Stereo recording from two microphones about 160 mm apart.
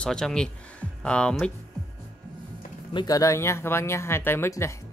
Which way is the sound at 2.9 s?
20° left (ahead or behind).